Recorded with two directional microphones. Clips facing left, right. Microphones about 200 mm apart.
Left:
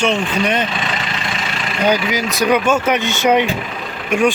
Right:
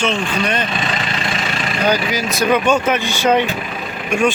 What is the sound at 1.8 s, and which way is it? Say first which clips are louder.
Speech: left 2 dB; 20° left (ahead or behind).